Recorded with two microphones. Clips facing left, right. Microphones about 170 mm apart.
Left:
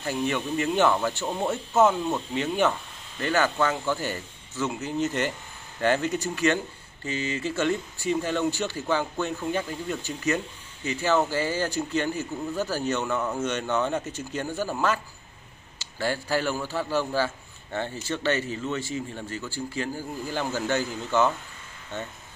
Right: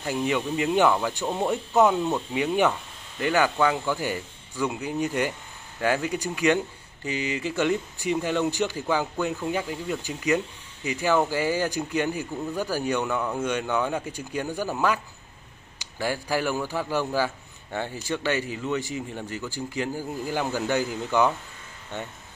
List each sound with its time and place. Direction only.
0.0 s speech: 15° right (ahead or behind)